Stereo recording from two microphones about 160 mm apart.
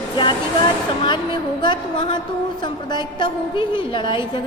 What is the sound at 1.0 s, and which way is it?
A woman's voice, 30° left (ahead or behind).